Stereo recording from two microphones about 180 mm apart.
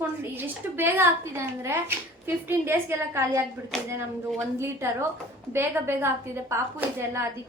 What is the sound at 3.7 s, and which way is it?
Speech, centre (ahead or behind).